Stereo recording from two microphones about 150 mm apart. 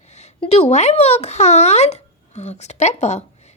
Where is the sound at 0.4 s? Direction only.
45° left (ahead or behind).